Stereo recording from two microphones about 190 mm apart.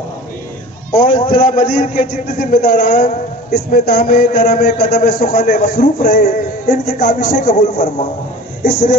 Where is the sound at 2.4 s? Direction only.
55° left (ahead or behind).